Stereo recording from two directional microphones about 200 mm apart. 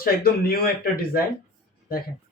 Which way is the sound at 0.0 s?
50° left (ahead or behind).